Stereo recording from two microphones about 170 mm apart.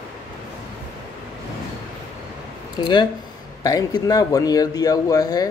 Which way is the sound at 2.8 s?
25° left (ahead or behind).